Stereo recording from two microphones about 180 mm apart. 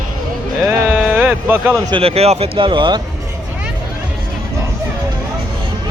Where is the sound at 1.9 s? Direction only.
30° right (ahead or behind).